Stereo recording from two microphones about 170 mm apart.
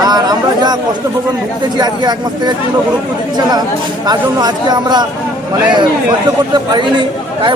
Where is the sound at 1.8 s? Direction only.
25° right (ahead or behind).